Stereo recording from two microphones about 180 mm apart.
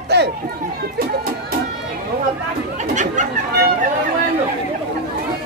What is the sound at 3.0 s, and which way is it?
Chatter, 45° right (ahead or behind).